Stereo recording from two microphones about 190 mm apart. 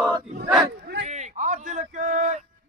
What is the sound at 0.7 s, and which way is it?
Bow-wow, 60° right (ahead or behind).